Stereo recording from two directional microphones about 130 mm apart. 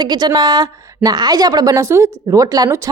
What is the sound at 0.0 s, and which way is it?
A woman's voice, 30° right (ahead or behind).